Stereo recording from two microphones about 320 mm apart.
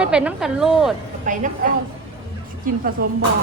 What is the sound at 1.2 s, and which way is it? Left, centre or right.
Speech, right.